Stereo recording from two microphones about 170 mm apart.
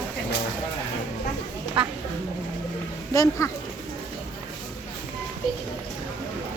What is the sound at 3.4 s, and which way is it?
Speech, 20° left (ahead or behind).